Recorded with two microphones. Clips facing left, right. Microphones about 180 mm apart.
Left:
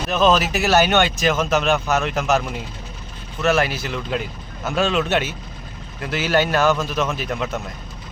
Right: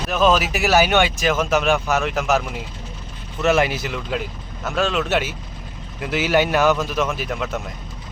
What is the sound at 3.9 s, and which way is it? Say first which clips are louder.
Speech: left 1 dB; 5° right (ahead or behind).